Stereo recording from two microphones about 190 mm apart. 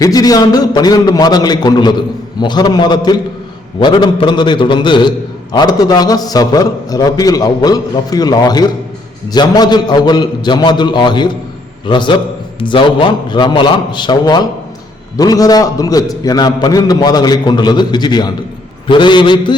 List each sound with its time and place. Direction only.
0.0 s a man's voice: 20° left (ahead or behind)